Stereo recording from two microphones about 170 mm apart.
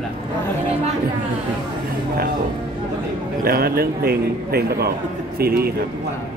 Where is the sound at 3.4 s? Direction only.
60° right (ahead or behind).